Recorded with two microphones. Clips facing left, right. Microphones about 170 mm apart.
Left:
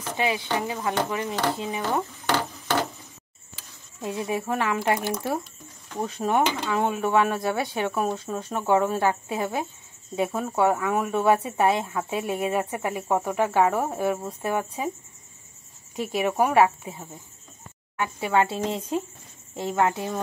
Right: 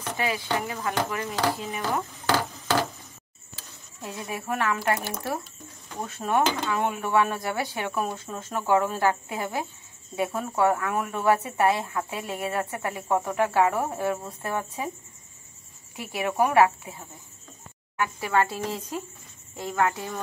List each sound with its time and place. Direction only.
0.2 s speech: 20° left (ahead or behind)
2.2 s a sound: 5° right (ahead or behind)
4.0 s speech: 20° left (ahead or behind)
13.8 s speech: 10° left (ahead or behind)
16.0 s speech: 15° left (ahead or behind)